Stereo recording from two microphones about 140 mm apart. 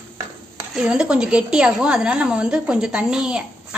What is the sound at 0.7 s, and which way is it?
Speech, 5° right (ahead or behind).